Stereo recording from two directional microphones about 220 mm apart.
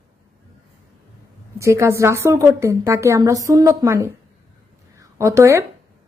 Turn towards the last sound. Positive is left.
turn(degrees=-15)  # may be behind; listen again after turning